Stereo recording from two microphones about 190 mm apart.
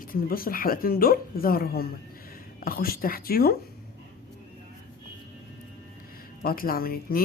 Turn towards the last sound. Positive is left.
turn(degrees=50)  # may be behind; listen again after turning